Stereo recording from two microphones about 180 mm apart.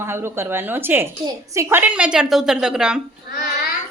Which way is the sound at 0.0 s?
15° right (ahead or behind).